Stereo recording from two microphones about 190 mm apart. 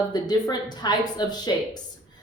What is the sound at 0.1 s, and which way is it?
Speech, 20° left (ahead or behind).